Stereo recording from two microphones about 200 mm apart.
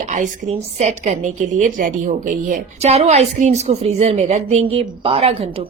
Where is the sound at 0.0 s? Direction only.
35° right (ahead or behind).